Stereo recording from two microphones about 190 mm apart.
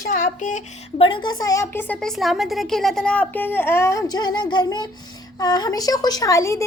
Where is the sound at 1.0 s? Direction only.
25° left (ahead or behind).